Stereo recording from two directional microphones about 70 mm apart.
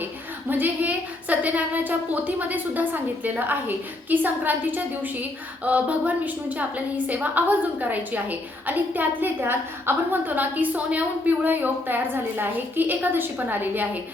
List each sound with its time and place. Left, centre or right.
0.0 s a woman's voice: right